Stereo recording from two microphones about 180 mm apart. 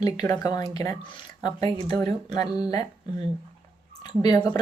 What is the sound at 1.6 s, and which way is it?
Speech, 35° right (ahead or behind).